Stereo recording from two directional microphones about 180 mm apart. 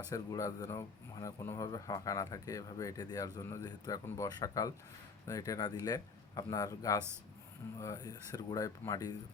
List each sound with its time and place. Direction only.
0.1 s speech: 20° left (ahead or behind)